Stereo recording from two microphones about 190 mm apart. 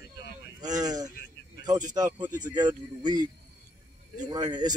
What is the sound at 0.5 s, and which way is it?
Speech, 20° right (ahead or behind).